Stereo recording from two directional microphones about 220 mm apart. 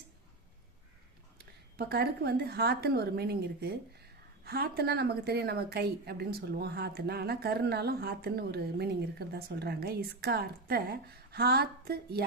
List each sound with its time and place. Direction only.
1.4 s a woman's voice: 45° right (ahead or behind)